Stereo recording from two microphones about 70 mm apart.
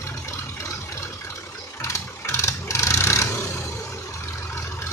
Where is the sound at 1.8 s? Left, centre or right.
Left.